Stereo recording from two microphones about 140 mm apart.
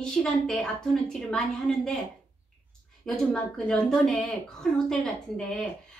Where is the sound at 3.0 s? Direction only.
5° left (ahead or behind).